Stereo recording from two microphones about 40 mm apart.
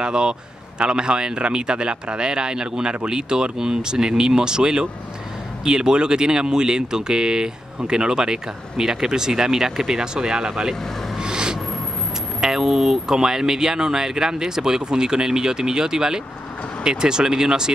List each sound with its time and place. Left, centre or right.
0.0 s speech: right
11.2 s a sound: centre
12.4 s speech: centre